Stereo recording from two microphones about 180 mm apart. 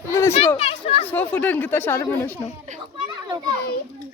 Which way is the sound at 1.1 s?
10° left (ahead or behind).